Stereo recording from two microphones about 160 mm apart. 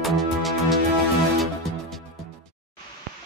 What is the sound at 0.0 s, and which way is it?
Music, centre (ahead or behind).